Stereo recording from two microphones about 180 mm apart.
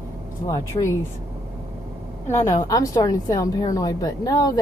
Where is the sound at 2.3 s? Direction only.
15° left (ahead or behind).